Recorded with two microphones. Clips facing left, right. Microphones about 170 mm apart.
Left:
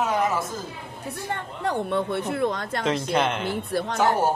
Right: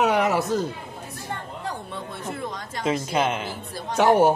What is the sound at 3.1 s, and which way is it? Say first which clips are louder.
Speech: even; 5° right (ahead or behind).